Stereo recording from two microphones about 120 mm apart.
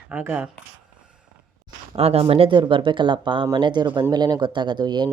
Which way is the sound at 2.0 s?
55° right (ahead or behind).